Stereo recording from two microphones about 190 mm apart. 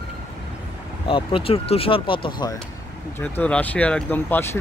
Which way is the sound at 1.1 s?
30° left (ahead or behind).